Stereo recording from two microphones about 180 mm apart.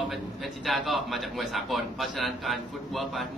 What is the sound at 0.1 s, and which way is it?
A man's voice, centre (ahead or behind).